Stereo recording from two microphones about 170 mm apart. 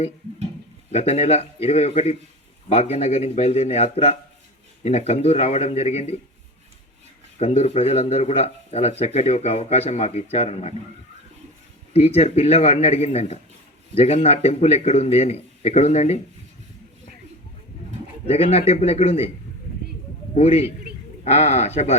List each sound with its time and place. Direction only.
0.9 s speech: 40° left (ahead or behind)
7.3 s speech: 40° left (ahead or behind)
11.9 s speech: 35° left (ahead or behind)
18.3 s speech: 35° left (ahead or behind)
20.3 s speech: 40° left (ahead or behind)